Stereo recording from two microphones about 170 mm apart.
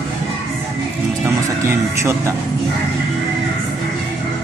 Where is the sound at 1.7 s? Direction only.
15° right (ahead or behind).